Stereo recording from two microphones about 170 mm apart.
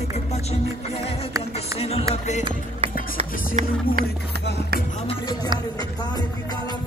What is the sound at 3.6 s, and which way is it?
Speech, 45° right (ahead or behind).